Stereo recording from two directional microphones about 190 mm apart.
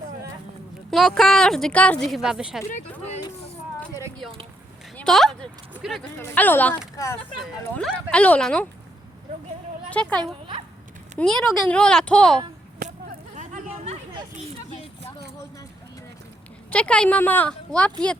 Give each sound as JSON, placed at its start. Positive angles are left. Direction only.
{"t": 0.9, "sound": "a woman's voice", "side_deg": 0}
{"t": 2.6, "sound": "speech", "side_deg": 40}
{"t": 3.8, "sound": "a sound", "side_deg": 10}
{"t": 6.2, "sound": "a woman's voice", "side_deg": 10}
{"t": 7.8, "sound": "a woman's voice", "side_deg": 5}
{"t": 9.9, "sound": "speech", "side_deg": 5}
{"t": 11.2, "sound": "a woman's voice", "side_deg": 5}
{"t": 12.8, "sound": "a sound", "side_deg": -45}
{"t": 16.7, "sound": "a woman's voice", "side_deg": 5}